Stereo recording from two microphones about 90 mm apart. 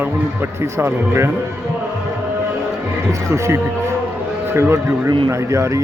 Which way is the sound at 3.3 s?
35° right (ahead or behind).